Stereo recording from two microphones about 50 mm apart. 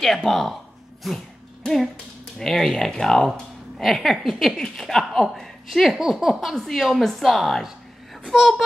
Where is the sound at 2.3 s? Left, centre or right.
Centre.